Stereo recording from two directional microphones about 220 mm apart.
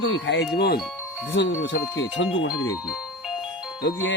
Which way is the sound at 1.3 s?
50° left (ahead or behind).